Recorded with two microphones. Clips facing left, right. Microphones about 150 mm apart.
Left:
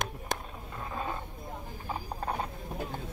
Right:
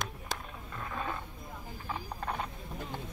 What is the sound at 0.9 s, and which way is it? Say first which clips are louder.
Roaring cats: left 2 dB; 25° left (ahead or behind).